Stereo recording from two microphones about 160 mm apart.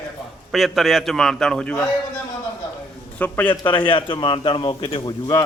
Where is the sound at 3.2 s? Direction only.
10° left (ahead or behind).